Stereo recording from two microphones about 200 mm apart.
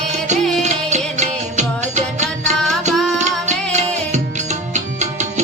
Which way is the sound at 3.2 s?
35° right (ahead or behind).